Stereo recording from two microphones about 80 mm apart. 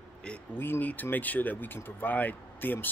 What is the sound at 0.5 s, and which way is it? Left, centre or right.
Speech, left.